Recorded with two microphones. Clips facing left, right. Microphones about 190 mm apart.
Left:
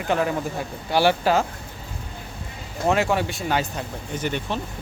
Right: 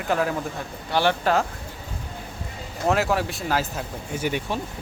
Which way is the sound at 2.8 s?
Centre (ahead or behind).